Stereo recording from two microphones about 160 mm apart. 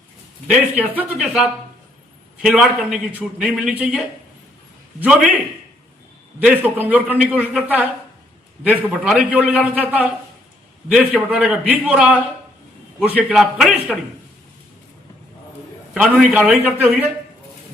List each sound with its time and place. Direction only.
0.4 s a man's voice: 10° right (ahead or behind)
6.4 s a man's voice: 10° right (ahead or behind)
16.0 s a man's voice: 10° right (ahead or behind)